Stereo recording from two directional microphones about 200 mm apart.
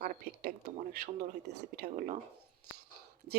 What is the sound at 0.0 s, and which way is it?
Speech, 45° right (ahead or behind).